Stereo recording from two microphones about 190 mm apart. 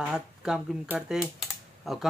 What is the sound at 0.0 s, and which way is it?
Speech, 5° right (ahead or behind).